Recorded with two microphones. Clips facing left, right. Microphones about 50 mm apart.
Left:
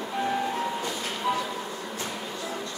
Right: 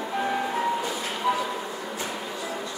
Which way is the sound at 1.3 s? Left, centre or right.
Centre.